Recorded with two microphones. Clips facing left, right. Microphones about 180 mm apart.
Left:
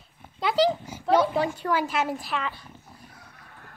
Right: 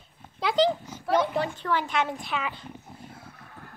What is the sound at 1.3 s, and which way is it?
A woman's voice, 10° left (ahead or behind).